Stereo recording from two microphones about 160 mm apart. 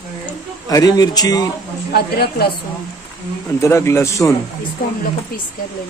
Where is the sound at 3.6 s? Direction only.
15° left (ahead or behind).